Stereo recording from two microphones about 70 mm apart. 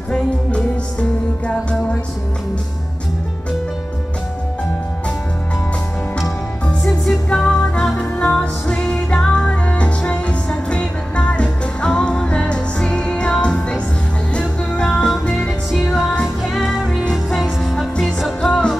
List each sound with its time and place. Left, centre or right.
1.5 s music: centre
6.1 s music: centre
16.4 s music: centre